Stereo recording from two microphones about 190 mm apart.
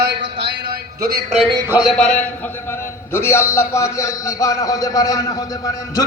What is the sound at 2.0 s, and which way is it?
A man's voice, 5° left (ahead or behind).